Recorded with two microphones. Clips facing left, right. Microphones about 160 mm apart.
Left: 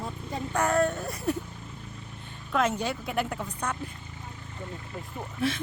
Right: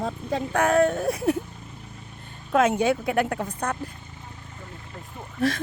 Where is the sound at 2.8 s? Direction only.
55° right (ahead or behind).